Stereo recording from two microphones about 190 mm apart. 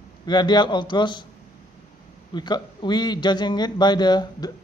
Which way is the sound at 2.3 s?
25° left (ahead or behind).